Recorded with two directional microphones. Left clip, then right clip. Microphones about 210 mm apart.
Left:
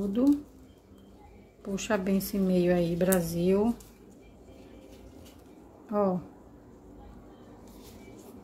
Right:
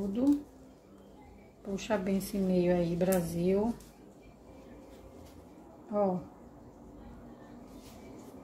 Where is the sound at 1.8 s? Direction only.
15° left (ahead or behind).